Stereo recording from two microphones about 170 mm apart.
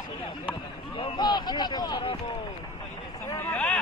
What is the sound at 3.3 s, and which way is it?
Speech, 10° left (ahead or behind).